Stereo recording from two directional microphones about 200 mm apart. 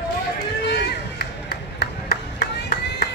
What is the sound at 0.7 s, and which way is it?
Run, 50° left (ahead or behind).